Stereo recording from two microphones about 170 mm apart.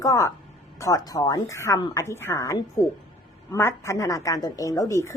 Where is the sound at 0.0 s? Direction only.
20° left (ahead or behind).